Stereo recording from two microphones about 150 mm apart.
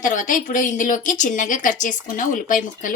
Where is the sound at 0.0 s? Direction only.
60° left (ahead or behind).